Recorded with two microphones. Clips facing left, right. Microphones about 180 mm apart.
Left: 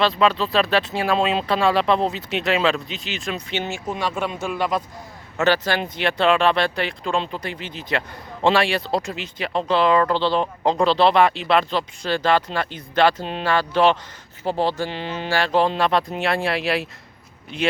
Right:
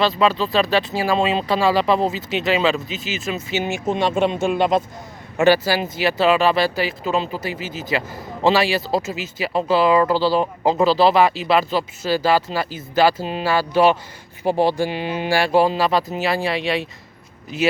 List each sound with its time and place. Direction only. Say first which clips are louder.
0.0 s speech: right 1 dB; centre (ahead or behind)
3.7 s speech: right 8 dB; 25° right (ahead or behind)
5.4 s speech: right 4 dB; 10° right (ahead or behind)